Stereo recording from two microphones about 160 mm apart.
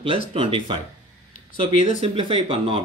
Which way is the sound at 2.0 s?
35° right (ahead or behind).